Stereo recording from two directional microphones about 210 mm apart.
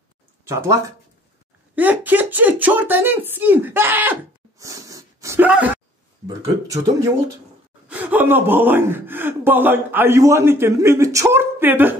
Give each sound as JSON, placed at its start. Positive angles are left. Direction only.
{"t": 0.5, "sound": "speech", "side_deg": -15}